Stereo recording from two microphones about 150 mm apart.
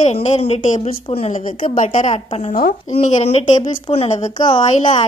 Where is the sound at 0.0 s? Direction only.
45° left (ahead or behind).